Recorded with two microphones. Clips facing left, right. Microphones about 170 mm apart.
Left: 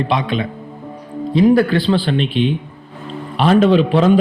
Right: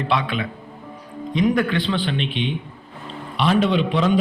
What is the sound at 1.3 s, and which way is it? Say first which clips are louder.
A man's voice: left 7 dB; 35° left (ahead or behind).